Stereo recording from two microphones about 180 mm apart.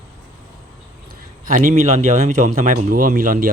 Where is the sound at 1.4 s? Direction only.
45° right (ahead or behind).